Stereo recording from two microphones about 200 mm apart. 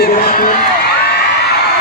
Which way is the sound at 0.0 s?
45° left (ahead or behind).